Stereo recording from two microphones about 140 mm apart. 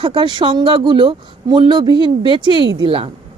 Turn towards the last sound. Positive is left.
turn(degrees=-40)  # may be behind; listen again after turning